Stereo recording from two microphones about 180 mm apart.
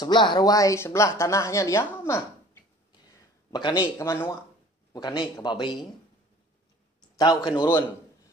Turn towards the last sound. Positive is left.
turn(degrees=25)  # may be behind; listen again after turning